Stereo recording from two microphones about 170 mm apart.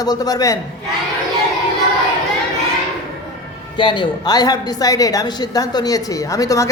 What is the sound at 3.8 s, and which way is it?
A woman's voice, 30° left (ahead or behind).